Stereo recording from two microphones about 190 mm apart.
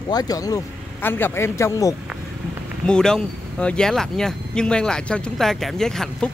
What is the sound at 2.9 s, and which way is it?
Speech, 5° left (ahead or behind).